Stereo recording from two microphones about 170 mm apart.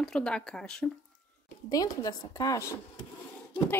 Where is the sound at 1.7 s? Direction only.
20° left (ahead or behind).